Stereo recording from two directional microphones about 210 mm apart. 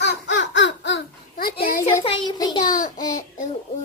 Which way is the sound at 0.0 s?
55° left (ahead or behind).